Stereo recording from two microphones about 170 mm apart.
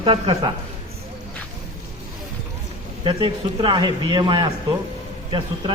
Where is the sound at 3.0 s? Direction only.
30° right (ahead or behind).